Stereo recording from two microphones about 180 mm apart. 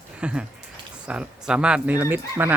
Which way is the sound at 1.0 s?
5° right (ahead or behind).